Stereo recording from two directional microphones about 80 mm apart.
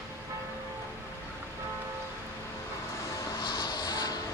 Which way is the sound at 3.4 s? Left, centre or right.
Left.